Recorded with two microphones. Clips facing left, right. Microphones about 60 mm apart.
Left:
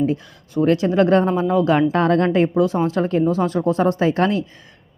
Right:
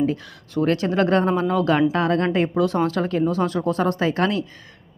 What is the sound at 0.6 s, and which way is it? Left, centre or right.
Speech, centre.